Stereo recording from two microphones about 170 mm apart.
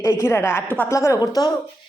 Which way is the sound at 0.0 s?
15° left (ahead or behind).